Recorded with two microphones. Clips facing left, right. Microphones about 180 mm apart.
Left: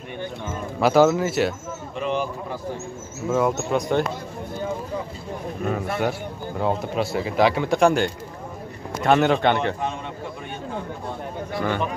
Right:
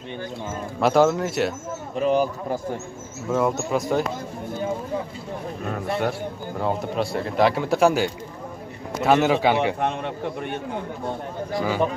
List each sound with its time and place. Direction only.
0.7 s speech: centre (ahead or behind)
2.0 s speech: 40° right (ahead or behind)
3.3 s speech: centre (ahead or behind)
5.7 s speech: centre (ahead or behind)
9.8 s a man's voice: 65° right (ahead or behind)